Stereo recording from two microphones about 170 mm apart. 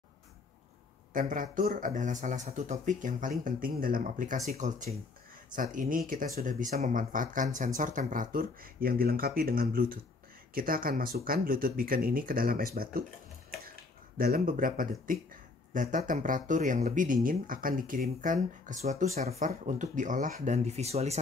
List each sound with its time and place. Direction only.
1.1 s speech: 50° right (ahead or behind)
14.1 s speech: 55° right (ahead or behind); by 21.2 s 40° right (ahead or behind)